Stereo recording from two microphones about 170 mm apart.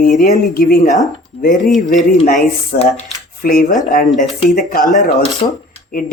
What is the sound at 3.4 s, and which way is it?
Speech, 60° left (ahead or behind).